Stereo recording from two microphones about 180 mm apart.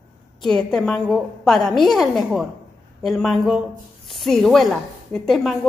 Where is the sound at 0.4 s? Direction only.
5° left (ahead or behind).